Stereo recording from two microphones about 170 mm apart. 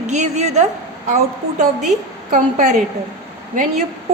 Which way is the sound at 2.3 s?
50° right (ahead or behind).